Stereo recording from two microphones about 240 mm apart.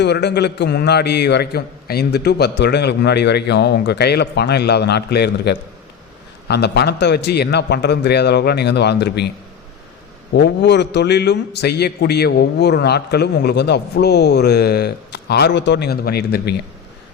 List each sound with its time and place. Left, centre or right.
0.0 s a man's voice: left
10.3 s a man's voice: left